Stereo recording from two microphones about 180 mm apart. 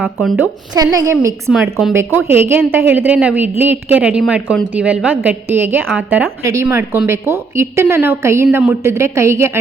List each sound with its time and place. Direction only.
0.0 s a woman's voice: centre (ahead or behind)
0.8 s a woman's voice: 15° right (ahead or behind)